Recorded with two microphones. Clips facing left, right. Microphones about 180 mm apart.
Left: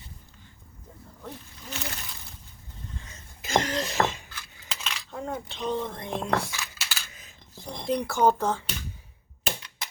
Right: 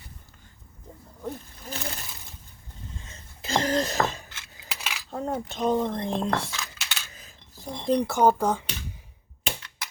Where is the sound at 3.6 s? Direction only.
35° right (ahead or behind).